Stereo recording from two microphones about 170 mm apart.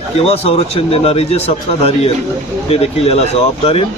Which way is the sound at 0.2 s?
35° left (ahead or behind).